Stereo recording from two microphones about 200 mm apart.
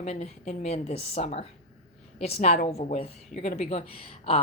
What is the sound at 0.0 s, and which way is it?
A woman's voice, 35° left (ahead or behind).